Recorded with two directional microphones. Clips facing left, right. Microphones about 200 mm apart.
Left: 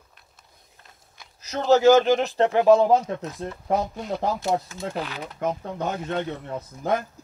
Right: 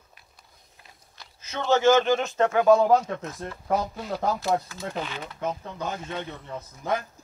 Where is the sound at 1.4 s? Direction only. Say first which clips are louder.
Left 4 dB; 40° left (ahead or behind).